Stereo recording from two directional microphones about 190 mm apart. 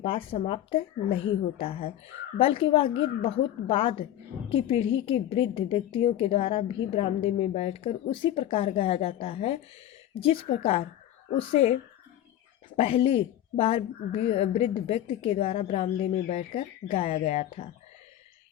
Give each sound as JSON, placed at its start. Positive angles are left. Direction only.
{"t": 0.0, "sound": "a woman's voice", "side_deg": 30}